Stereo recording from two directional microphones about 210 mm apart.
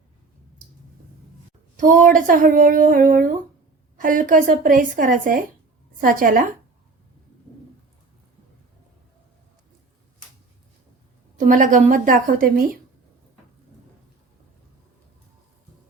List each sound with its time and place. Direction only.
1.7 s speech: 35° right (ahead or behind)
11.3 s speech: 40° right (ahead or behind)